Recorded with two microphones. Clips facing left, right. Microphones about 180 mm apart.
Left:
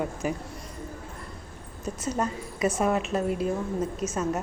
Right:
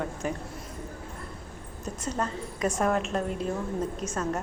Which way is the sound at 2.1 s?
10° left (ahead or behind).